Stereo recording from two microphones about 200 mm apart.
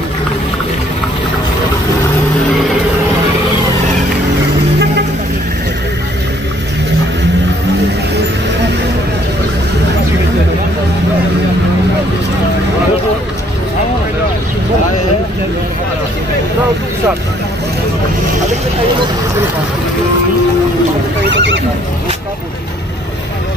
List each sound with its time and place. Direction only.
21.3 s neigh: 60° right (ahead or behind)